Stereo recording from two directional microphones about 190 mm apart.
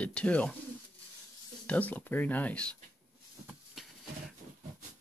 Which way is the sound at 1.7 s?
10° left (ahead or behind).